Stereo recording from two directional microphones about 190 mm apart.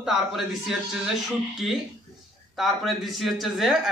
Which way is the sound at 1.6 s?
5° right (ahead or behind).